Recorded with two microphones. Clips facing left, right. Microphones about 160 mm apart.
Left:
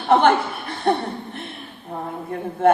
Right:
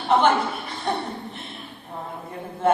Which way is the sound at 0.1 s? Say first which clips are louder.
Left 3 dB; 55° left (ahead or behind).